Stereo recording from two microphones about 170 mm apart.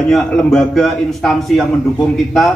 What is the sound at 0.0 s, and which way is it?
A man's voice, 5° left (ahead or behind).